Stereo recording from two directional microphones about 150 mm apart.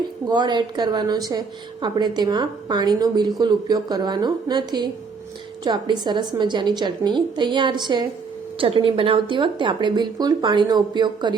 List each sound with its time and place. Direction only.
0.3 s a woman's voice: 30° right (ahead or behind)